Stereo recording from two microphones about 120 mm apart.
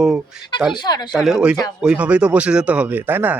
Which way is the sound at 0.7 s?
35° left (ahead or behind).